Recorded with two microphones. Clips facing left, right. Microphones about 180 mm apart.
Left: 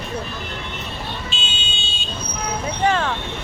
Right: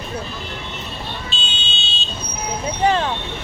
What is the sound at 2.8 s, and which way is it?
Speech, 25° right (ahead or behind).